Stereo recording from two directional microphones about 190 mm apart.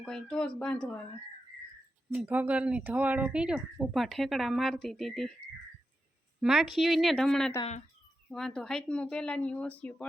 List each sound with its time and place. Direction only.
0.0 s speech: 5° left (ahead or behind)
2.0 s speech: 10° right (ahead or behind)
6.4 s speech: centre (ahead or behind)
7.6 s speech: 35° left (ahead or behind)
8.3 s speech: 5° left (ahead or behind)